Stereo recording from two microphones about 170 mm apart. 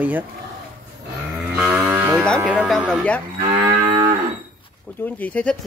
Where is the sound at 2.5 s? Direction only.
Centre (ahead or behind).